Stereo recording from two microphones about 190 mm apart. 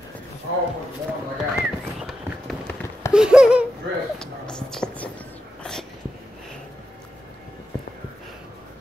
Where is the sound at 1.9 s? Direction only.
Centre (ahead or behind).